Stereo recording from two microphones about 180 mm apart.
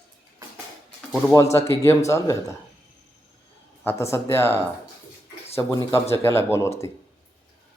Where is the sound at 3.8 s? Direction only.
15° left (ahead or behind).